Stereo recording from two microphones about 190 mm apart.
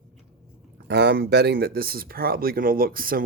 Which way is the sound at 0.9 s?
60° right (ahead or behind).